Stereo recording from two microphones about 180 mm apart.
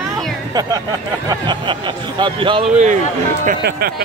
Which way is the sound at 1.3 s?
25° right (ahead or behind).